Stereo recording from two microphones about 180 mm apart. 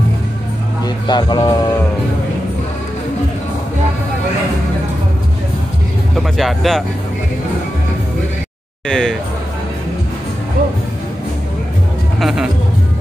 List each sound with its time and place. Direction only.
0.8 s a man's voice: 25° left (ahead or behind)
6.1 s speech: centre (ahead or behind)
8.8 s speech: 5° left (ahead or behind)
12.2 s music: centre (ahead or behind)